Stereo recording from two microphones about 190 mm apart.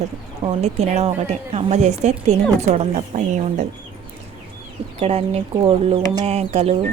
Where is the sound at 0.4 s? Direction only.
35° right (ahead or behind).